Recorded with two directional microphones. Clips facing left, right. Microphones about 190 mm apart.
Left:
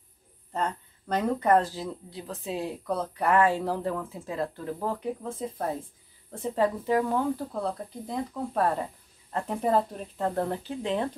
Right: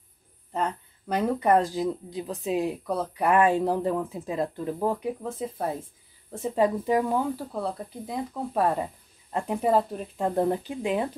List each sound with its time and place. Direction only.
0.5 s speech: 10° right (ahead or behind)